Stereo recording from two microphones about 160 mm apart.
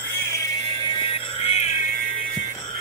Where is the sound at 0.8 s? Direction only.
30° left (ahead or behind).